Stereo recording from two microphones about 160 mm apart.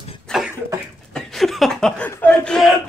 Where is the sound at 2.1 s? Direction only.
10° left (ahead or behind).